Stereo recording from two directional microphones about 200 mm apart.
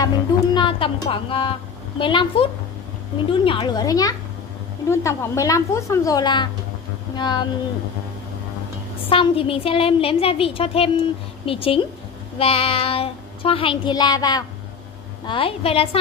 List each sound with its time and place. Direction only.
0.6 s a woman's voice: 25° left (ahead or behind)
9.1 s a woman's voice: 30° left (ahead or behind)